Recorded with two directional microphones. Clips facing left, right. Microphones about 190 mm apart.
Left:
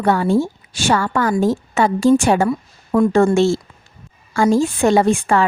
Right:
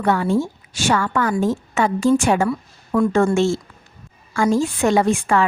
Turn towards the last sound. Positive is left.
turn(degrees=30)  # may be behind; listen again after turning